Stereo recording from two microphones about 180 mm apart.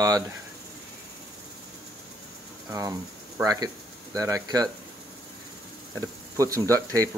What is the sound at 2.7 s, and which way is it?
Speech, 20° right (ahead or behind).